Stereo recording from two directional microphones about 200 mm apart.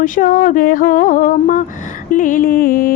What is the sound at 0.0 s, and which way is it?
Music, 45° left (ahead or behind).